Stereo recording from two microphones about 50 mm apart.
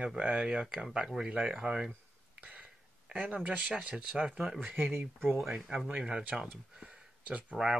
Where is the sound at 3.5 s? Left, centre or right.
Right.